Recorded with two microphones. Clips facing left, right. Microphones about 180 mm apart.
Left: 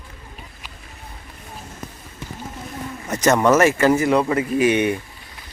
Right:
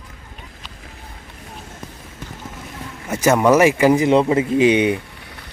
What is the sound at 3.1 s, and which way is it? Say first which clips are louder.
Speech: right 2 dB; 10° right (ahead or behind).